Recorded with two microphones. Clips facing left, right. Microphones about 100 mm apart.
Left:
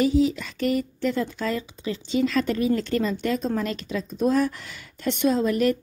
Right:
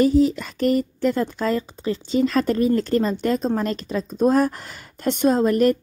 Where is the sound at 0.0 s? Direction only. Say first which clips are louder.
Right 4 dB; 45° right (ahead or behind).